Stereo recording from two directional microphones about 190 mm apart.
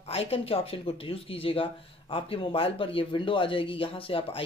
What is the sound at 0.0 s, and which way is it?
Speech, 30° left (ahead or behind).